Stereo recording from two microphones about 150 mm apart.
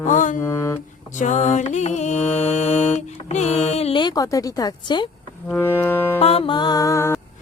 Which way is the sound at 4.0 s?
25° left (ahead or behind).